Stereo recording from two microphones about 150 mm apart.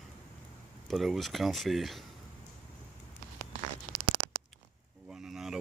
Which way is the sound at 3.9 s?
40° right (ahead or behind).